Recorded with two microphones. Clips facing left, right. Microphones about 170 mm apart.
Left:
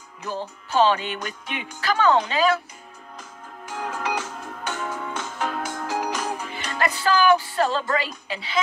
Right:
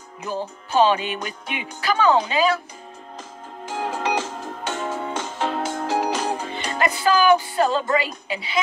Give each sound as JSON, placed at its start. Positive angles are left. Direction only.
{"t": 0.2, "sound": "music", "side_deg": -10}
{"t": 3.7, "sound": "music", "side_deg": -30}